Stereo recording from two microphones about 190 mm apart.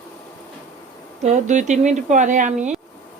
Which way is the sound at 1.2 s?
40° right (ahead or behind).